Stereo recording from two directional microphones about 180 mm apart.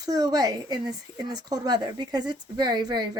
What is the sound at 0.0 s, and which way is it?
Speech, 20° right (ahead or behind).